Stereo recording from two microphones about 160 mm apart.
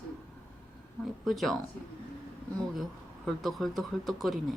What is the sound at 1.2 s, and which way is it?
Speech, centre (ahead or behind).